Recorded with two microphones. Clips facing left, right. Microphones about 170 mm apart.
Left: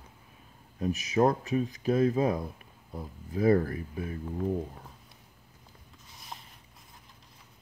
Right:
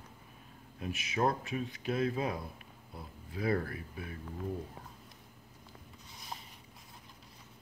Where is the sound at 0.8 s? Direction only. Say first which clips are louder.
Left 7 dB; 40° left (ahead or behind).